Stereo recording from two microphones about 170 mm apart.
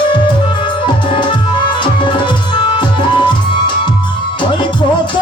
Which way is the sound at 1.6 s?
30° left (ahead or behind).